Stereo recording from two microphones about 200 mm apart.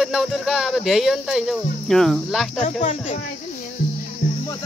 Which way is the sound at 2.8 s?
40° left (ahead or behind).